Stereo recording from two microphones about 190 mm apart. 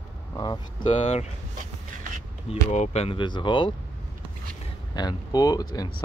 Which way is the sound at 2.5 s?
35° left (ahead or behind).